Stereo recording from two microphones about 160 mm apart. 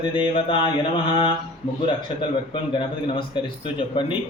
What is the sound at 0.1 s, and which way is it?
Speech, 30° left (ahead or behind).